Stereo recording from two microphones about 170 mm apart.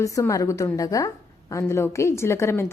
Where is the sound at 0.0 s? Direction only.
20° left (ahead or behind).